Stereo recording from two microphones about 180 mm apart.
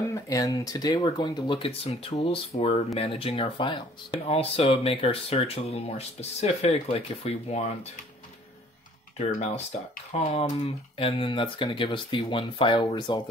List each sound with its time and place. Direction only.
0.1 s speech: 15° left (ahead or behind); by 7.6 s 35° left (ahead or behind)
9.4 s speech: 40° left (ahead or behind); by 13.2 s 25° left (ahead or behind)